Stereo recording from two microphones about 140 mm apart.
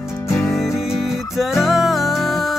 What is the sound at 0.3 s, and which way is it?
Music, 20° left (ahead or behind).